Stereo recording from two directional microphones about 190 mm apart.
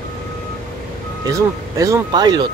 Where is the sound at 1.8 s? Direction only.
20° right (ahead or behind).